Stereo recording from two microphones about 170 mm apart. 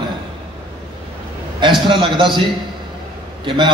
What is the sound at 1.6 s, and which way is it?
Speech, 30° right (ahead or behind).